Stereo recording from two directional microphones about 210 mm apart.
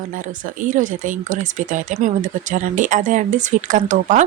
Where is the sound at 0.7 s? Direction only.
40° right (ahead or behind).